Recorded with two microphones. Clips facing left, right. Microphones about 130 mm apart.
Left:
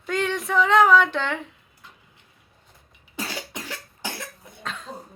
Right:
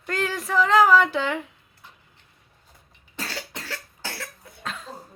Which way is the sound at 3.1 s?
15° left (ahead or behind).